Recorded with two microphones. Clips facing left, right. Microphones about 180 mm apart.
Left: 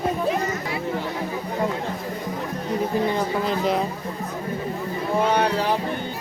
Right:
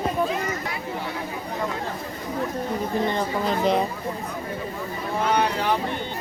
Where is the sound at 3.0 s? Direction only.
5° left (ahead or behind).